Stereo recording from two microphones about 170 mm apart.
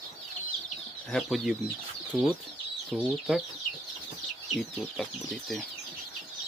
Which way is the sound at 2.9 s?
Centre (ahead or behind).